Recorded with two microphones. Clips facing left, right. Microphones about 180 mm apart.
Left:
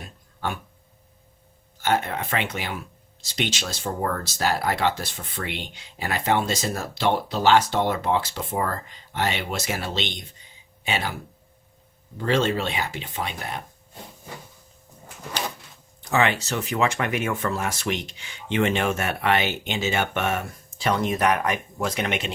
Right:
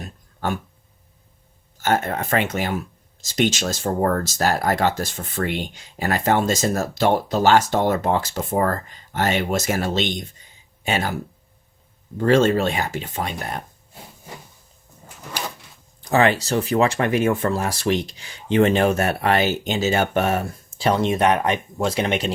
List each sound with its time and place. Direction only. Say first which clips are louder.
0.0 s a sound: right 4 dB; 45° right (ahead or behind)
1.8 s speech: right 3 dB; 45° right (ahead or behind)
12.1 s speech: right 6 dB; 45° right (ahead or behind)
16.0 s speech: right 5 dB; 35° right (ahead or behind)